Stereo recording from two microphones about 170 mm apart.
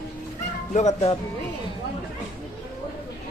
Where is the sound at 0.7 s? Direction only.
45° left (ahead or behind).